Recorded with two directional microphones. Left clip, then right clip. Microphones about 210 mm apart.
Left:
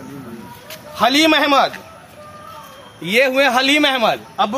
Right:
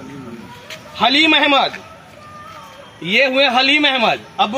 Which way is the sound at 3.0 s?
20° left (ahead or behind).